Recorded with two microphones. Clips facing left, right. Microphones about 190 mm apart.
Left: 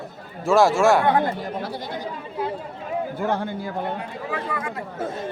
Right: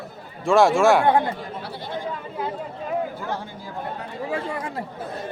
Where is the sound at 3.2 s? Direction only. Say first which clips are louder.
Left 6 dB; 60° left (ahead or behind).